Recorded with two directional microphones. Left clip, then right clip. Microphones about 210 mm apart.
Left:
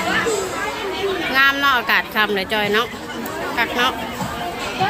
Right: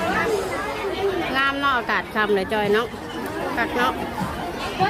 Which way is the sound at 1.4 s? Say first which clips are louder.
Left 7 dB; 5° right (ahead or behind).